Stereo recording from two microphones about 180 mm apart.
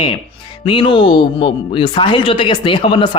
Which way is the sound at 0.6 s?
30° left (ahead or behind).